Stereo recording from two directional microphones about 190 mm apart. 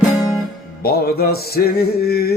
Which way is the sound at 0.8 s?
55° left (ahead or behind).